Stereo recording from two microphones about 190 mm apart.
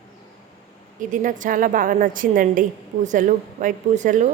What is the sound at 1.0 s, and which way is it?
A woman's voice, 45° right (ahead or behind).